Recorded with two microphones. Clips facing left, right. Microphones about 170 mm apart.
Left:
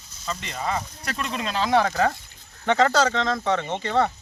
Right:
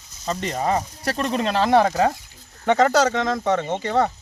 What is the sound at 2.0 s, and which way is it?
Speech, 10° right (ahead or behind).